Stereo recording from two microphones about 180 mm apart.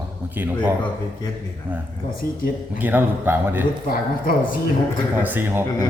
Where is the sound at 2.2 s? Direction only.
15° left (ahead or behind).